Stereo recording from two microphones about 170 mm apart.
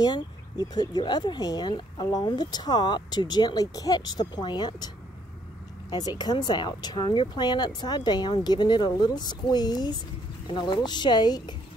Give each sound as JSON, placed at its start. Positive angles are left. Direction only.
{"t": 0.0, "sound": "speech", "side_deg": 25}